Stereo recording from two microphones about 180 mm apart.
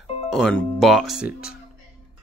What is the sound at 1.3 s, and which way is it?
Speech, 55° left (ahead or behind).